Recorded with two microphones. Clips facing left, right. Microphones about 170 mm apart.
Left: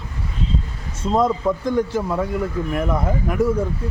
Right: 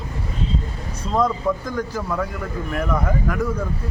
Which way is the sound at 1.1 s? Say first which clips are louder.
Left 2 dB; 25° left (ahead or behind).